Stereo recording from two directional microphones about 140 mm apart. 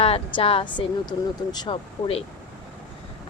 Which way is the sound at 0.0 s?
45° left (ahead or behind).